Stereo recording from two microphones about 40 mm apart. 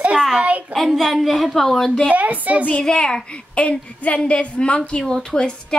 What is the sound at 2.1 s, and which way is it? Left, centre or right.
Speech, right.